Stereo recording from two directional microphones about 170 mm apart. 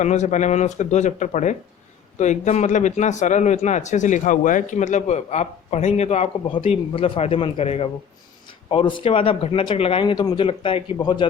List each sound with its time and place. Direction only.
0.0 s speech: 45° left (ahead or behind); by 11.3 s 25° left (ahead or behind)